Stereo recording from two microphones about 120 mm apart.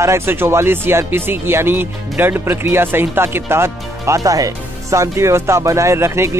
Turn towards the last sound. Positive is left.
turn(degrees=-20)  # may be behind; listen again after turning